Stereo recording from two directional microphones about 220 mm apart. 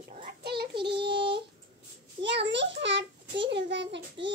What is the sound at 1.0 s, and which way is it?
A child's voice, 50° right (ahead or behind).